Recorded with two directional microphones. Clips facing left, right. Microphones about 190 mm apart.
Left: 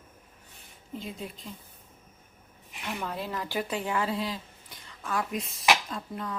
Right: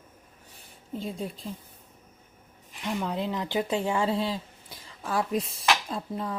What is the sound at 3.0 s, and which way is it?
A woman's voice, 20° right (ahead or behind).